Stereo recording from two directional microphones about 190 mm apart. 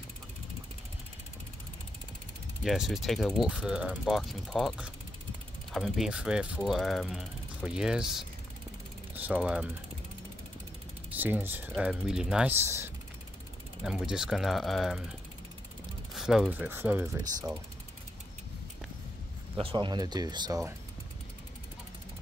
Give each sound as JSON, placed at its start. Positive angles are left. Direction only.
{"t": 2.6, "sound": "mechanisms", "side_deg": 0}
{"t": 11.1, "sound": "speech", "side_deg": -10}
{"t": 11.7, "sound": "mechanisms", "side_deg": -5}
{"t": 13.8, "sound": "mechanisms", "side_deg": -5}
{"t": 16.2, "sound": "speech", "side_deg": 0}
{"t": 19.6, "sound": "speech", "side_deg": -25}